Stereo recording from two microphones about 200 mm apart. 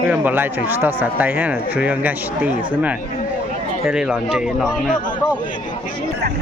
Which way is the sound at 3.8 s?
5° right (ahead or behind).